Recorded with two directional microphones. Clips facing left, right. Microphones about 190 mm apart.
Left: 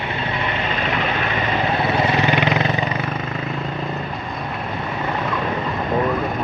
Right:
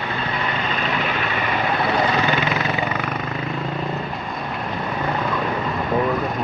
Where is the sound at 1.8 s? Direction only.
25° left (ahead or behind).